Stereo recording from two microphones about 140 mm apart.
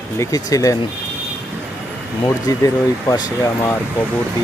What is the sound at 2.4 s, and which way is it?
Speech, 25° left (ahead or behind).